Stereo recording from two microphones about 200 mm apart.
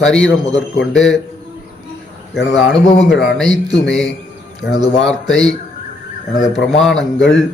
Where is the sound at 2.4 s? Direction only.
60° left (ahead or behind).